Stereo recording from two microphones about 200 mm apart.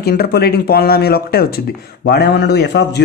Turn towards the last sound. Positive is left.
turn(degrees=55)  # may be behind; listen again after turning